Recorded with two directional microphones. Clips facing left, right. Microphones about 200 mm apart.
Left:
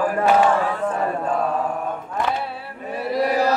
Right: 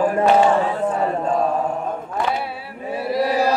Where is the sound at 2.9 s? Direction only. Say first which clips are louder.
Right 1 dB; 10° right (ahead or behind).